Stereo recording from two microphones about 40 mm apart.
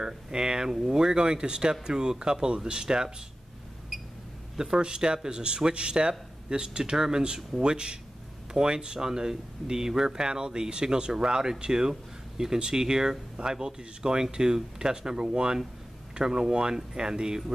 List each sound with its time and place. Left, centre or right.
0.0 s speech: centre
3.9 s a sound: centre
4.6 s speech: centre